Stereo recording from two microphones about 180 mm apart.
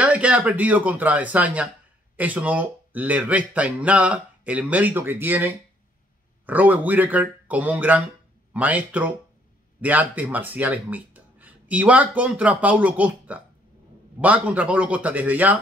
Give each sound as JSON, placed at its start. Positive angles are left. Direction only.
{"t": 0.0, "sound": "speech", "side_deg": -5}